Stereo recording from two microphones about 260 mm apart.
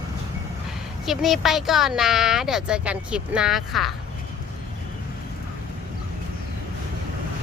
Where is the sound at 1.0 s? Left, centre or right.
Centre.